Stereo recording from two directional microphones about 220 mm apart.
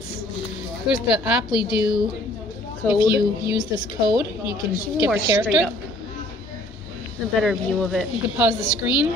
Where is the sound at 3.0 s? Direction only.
45° right (ahead or behind).